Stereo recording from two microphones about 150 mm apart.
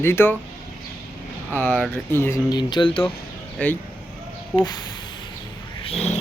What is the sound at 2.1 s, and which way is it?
Speech, 15° left (ahead or behind).